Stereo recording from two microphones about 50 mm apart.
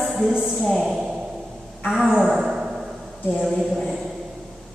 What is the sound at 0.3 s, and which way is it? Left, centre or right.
Speech, centre.